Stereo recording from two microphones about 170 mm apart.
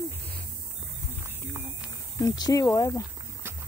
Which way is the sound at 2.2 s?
20° left (ahead or behind).